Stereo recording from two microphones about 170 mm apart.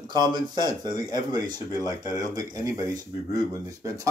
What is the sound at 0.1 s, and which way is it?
Speech, 25° right (ahead or behind).